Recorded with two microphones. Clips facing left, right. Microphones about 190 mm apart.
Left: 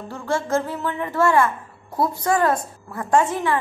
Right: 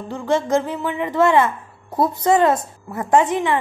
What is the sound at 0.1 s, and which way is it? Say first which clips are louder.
A woman's voice: right 4 dB; 20° right (ahead or behind).